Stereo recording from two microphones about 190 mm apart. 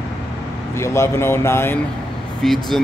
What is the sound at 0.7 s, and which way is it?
Speech, 15° left (ahead or behind).